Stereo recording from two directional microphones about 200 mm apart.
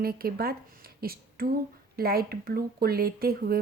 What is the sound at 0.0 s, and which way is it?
Speech, 50° right (ahead or behind).